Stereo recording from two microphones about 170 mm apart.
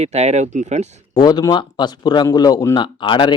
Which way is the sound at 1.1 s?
25° left (ahead or behind).